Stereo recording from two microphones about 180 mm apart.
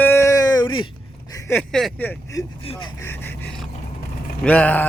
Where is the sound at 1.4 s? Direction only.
5° left (ahead or behind).